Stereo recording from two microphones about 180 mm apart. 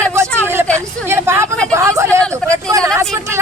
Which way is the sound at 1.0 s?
15° right (ahead or behind).